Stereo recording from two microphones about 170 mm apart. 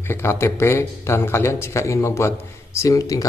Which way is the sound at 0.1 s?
15° left (ahead or behind).